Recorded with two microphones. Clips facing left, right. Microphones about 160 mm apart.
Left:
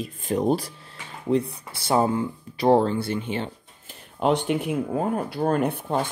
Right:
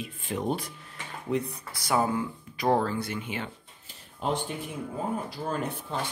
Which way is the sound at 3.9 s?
75° left (ahead or behind).